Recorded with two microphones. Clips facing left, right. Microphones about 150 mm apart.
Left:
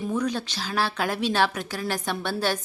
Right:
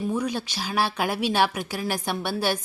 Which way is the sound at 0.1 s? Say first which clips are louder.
Even; 10° right (ahead or behind).